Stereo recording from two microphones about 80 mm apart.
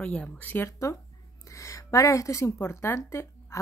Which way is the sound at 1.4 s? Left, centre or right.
Left.